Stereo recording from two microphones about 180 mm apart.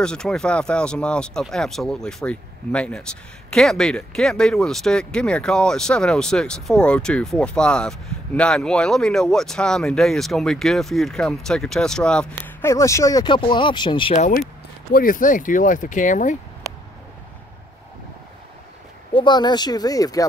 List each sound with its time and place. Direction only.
0.0 s speech: 5° left (ahead or behind)
12.6 s speech: 15° left (ahead or behind)
14.1 s speech: 40° left (ahead or behind)
19.1 s speech: 25° left (ahead or behind)